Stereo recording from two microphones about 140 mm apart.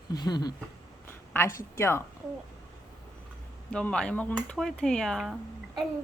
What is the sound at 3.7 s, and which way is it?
Speech, 5° left (ahead or behind).